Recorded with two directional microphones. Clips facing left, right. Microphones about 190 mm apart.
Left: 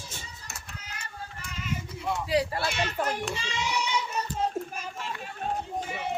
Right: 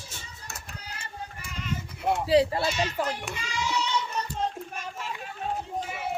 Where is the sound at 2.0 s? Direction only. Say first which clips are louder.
Right 5 dB; 55° right (ahead or behind).